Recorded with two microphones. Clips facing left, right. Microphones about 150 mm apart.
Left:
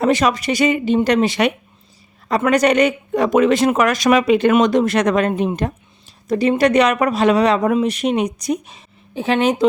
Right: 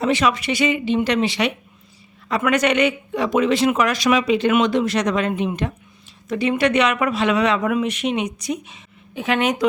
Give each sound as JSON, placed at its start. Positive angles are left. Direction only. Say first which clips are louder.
{"t": 0.0, "sound": "speech", "louder": "left 3 dB", "side_deg": 40}